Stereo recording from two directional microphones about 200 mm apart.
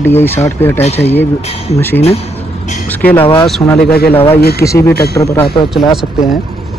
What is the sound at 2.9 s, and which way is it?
Speech, 10° left (ahead or behind).